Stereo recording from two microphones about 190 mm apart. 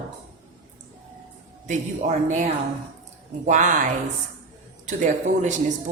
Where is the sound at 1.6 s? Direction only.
40° right (ahead or behind).